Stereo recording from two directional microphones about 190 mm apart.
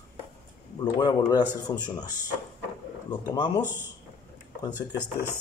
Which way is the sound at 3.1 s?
20° left (ahead or behind).